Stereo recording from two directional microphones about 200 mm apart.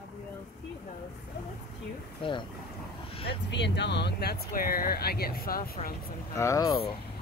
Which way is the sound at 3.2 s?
60° left (ahead or behind).